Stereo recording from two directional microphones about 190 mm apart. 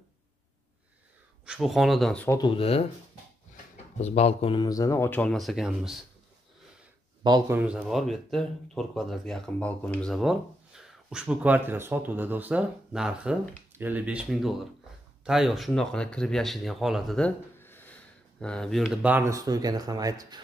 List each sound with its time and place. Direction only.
1.4 s speech: 5° right (ahead or behind)
2.4 s speech: 30° left (ahead or behind)
4.0 s speech: 35° left (ahead or behind); by 5.9 s centre (ahead or behind)
7.2 s speech: 20° right (ahead or behind)
7.5 s speech: 5° right (ahead or behind); by 20.4 s 20° right (ahead or behind)